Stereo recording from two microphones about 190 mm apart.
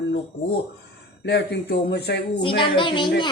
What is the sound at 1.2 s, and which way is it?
Speech, 60° left (ahead or behind).